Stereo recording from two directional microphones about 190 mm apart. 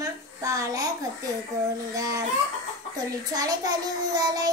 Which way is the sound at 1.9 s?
20° right (ahead or behind).